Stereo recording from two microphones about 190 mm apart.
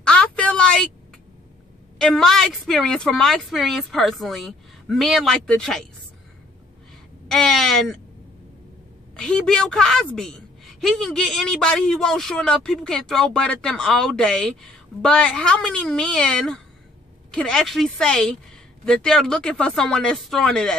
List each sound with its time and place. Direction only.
0.0 s a sound: 5° left (ahead or behind)
2.0 s a woman's voice: 5° left (ahead or behind)
7.2 s a woman's voice: centre (ahead or behind)
9.1 s a woman's voice: 5° left (ahead or behind)